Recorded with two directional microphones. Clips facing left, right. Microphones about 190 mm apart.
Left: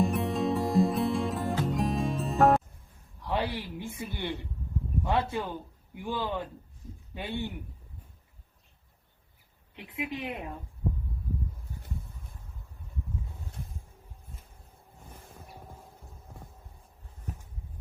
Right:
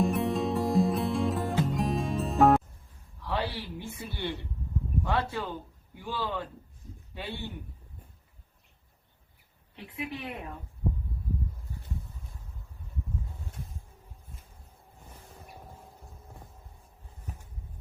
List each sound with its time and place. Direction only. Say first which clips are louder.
0.0 s music: even; centre (ahead or behind)
3.2 s a sound: left 2 dB; 15° left (ahead or behind)
5.0 s a man's voice: left 2 dB; 20° left (ahead or behind)
9.7 s a woman's voice: left 2 dB; 15° left (ahead or behind)